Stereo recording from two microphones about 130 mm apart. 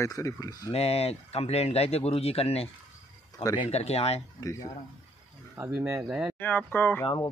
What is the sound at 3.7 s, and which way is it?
Speech, 55° left (ahead or behind).